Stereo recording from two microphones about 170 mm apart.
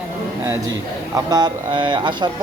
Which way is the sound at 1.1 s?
25° right (ahead or behind).